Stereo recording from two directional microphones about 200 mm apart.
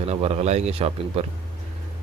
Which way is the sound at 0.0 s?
30° right (ahead or behind).